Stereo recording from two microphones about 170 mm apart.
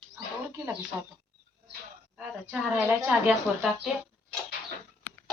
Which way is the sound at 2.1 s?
10° right (ahead or behind).